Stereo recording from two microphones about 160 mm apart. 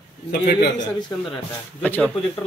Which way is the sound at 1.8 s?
10° left (ahead or behind).